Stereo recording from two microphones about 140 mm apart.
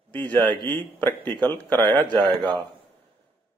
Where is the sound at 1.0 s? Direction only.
15° left (ahead or behind).